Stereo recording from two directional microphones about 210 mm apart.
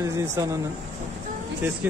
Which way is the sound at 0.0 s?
15° right (ahead or behind).